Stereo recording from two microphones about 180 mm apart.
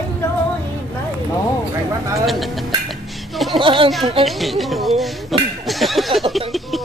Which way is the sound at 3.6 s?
30° right (ahead or behind).